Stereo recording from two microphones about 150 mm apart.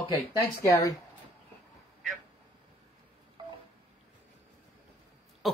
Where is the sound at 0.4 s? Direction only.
20° left (ahead or behind).